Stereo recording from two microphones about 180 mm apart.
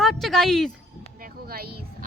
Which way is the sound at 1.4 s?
55° right (ahead or behind).